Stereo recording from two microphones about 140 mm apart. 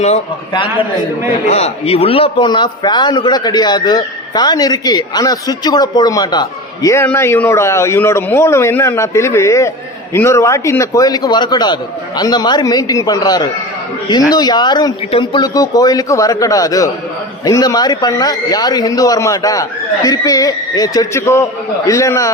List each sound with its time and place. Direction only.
0.5 s a man's voice: 35° left (ahead or behind)
1.5 s a man's voice: 50° left (ahead or behind); by 22.3 s 20° left (ahead or behind)